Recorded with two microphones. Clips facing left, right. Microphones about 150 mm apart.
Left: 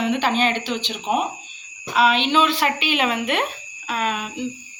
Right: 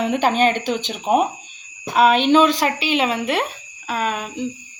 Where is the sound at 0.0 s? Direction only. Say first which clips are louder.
Right 3 dB; 45° right (ahead or behind).